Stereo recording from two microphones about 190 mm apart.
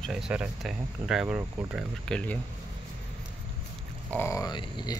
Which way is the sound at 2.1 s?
5° left (ahead or behind).